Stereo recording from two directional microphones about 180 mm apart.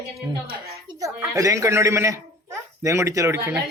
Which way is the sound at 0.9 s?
20° right (ahead or behind).